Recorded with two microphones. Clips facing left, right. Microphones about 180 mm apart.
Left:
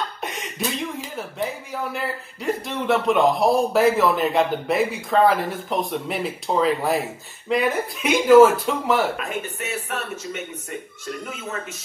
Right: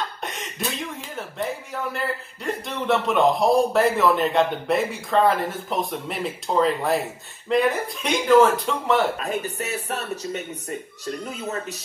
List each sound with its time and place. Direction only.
0.2 s speech: centre (ahead or behind)
9.2 s speech: 35° right (ahead or behind)